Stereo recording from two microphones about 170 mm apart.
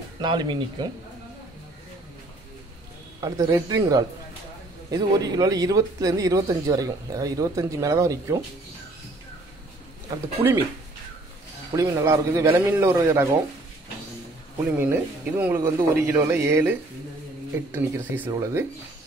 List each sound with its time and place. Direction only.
0.2 s speech: 25° right (ahead or behind)
3.2 s speech: 25° right (ahead or behind)
10.0 s speech: 15° right (ahead or behind)
11.7 s speech: 20° right (ahead or behind)
14.6 s speech: 10° right (ahead or behind)